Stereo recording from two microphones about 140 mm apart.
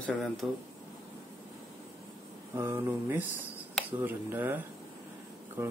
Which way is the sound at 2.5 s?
20° right (ahead or behind).